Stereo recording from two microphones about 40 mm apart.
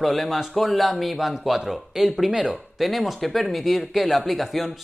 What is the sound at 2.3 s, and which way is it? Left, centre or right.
Speech, centre.